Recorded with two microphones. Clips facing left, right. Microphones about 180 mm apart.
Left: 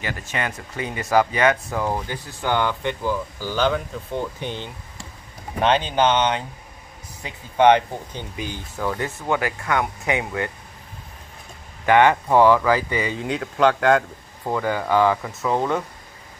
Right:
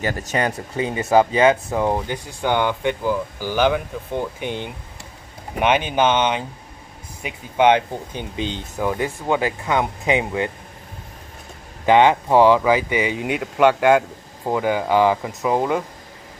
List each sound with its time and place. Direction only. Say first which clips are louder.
0.0 s speech: right 6 dB; 40° right (ahead or behind)
0.7 s speech: right 3 dB; 25° right (ahead or behind)
11.8 s speech: right 2 dB; 20° right (ahead or behind)